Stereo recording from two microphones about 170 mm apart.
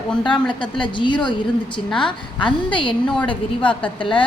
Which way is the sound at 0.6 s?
30° left (ahead or behind).